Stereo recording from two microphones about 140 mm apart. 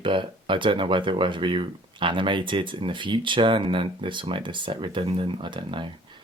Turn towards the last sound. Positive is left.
turn(degrees=-40)  # may be behind; listen again after turning